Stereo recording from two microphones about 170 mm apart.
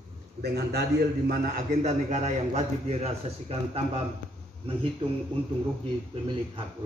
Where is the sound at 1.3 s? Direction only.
60° right (ahead or behind).